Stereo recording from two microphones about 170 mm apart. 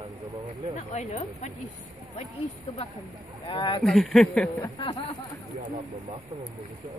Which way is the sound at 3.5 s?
25° left (ahead or behind).